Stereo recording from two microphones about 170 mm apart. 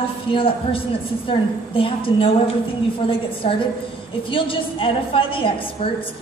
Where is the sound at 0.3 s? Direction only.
30° left (ahead or behind).